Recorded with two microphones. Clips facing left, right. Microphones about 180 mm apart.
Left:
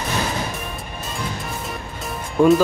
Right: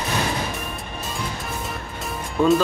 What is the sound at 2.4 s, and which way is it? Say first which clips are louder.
Speech: left 4 dB; 15° left (ahead or behind).